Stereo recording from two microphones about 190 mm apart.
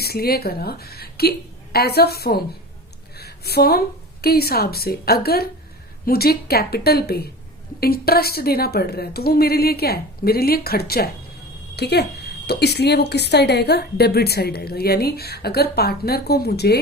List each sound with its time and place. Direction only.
0.0 s a woman's voice: 55° left (ahead or behind)